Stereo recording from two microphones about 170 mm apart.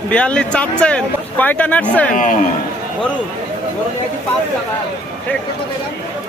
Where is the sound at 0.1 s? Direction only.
5° left (ahead or behind).